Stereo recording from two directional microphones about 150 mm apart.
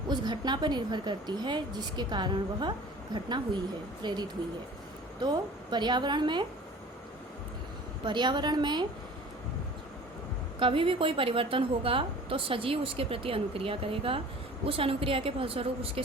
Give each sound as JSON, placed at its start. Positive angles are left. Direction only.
{"t": 0.1, "sound": "a woman's voice", "side_deg": -30}
{"t": 5.2, "sound": "a woman's voice", "side_deg": -30}
{"t": 8.0, "sound": "a woman's voice", "side_deg": -30}
{"t": 10.6, "sound": "a woman's voice", "side_deg": -35}